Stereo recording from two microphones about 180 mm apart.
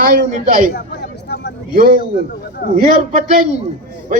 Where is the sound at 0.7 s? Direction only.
65° left (ahead or behind).